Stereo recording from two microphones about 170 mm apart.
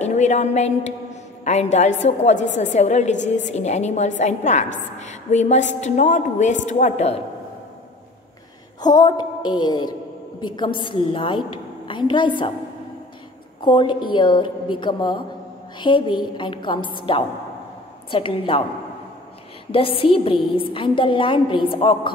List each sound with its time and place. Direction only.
0.0 s a woman's voice: 45° left (ahead or behind)
8.8 s a woman's voice: 25° left (ahead or behind)
13.7 s a woman's voice: 30° left (ahead or behind)
19.7 s a woman's voice: 35° left (ahead or behind)